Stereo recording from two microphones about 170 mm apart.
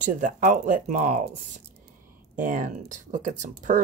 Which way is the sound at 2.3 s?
50° right (ahead or behind).